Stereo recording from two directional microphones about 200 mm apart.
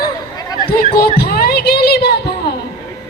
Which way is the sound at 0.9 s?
50° left (ahead or behind).